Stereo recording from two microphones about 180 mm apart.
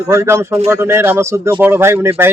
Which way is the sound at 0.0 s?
15° right (ahead or behind).